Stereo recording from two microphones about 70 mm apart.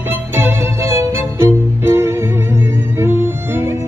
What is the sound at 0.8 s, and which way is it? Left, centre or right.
Music, right.